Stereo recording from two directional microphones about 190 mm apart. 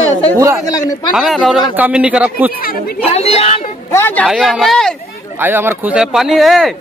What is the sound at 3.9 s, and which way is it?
Speech, 10° left (ahead or behind).